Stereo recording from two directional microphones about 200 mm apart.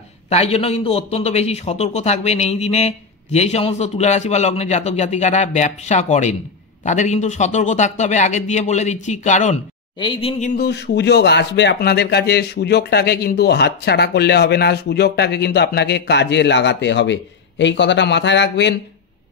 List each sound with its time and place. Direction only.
0.3 s a man's voice: 30° left (ahead or behind)
9.9 s speech: 25° left (ahead or behind)
10.5 s speech: 55° left (ahead or behind)